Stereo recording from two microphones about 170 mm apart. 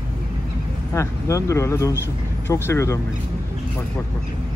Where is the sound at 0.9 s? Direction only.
20° left (ahead or behind).